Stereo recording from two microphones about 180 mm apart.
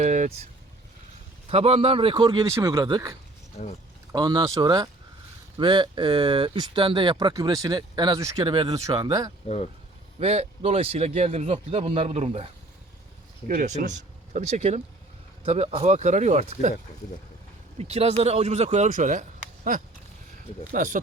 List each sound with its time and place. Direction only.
0.0 s vehicle: 40° right (ahead or behind)
1.5 s speech: 35° right (ahead or behind)
10.2 s a man's voice: 35° right (ahead or behind)
13.6 s a man's voice: 40° right (ahead or behind)
17.7 s a man's voice: 35° right (ahead or behind)